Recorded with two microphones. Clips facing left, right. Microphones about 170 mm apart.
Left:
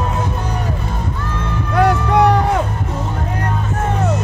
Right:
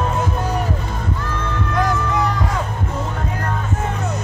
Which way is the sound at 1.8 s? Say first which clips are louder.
Left 7 dB; 65° left (ahead or behind).